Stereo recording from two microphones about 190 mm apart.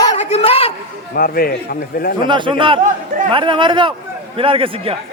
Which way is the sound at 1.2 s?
50° left (ahead or behind).